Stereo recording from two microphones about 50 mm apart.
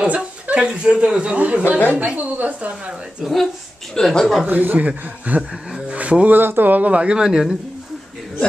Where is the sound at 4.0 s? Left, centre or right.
Centre.